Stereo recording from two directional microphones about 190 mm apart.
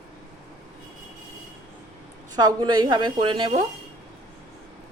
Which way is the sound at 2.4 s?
20° right (ahead or behind).